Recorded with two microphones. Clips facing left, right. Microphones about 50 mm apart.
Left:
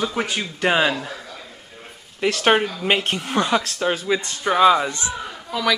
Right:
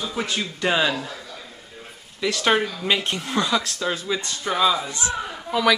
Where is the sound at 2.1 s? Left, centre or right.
Left.